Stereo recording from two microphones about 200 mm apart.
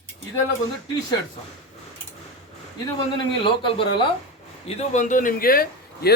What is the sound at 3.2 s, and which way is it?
A man's voice, 25° left (ahead or behind).